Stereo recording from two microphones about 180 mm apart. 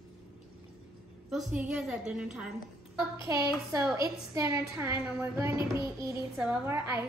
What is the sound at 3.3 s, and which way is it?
A woman's voice, 20° right (ahead or behind).